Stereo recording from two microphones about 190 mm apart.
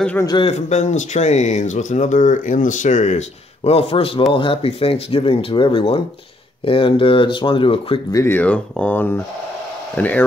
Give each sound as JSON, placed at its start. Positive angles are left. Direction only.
{"t": 0.0, "sound": "speech", "side_deg": 10}
{"t": 0.3, "sound": "speech", "side_deg": 30}
{"t": 8.2, "sound": "speech", "side_deg": 10}